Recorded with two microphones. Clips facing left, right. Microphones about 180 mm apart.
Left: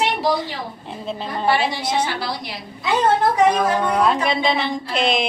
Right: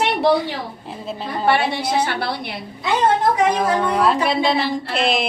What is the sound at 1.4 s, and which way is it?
A woman's voice, 60° right (ahead or behind).